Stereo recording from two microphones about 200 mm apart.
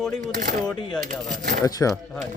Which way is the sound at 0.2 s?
40° right (ahead or behind).